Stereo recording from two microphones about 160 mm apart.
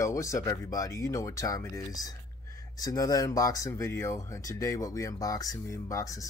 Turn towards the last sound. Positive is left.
turn(degrees=20)  # may be behind; listen again after turning